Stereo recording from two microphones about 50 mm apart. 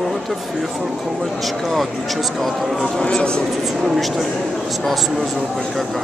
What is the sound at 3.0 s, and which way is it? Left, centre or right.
Speech, centre.